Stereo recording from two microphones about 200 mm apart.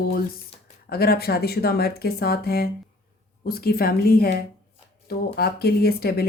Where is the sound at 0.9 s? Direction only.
50° left (ahead or behind).